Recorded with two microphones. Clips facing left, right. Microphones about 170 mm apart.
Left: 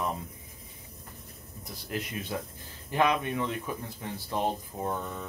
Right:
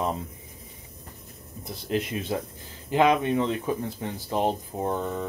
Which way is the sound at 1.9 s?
20° right (ahead or behind).